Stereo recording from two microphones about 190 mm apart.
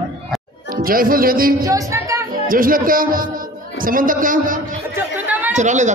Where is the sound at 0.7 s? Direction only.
50° right (ahead or behind).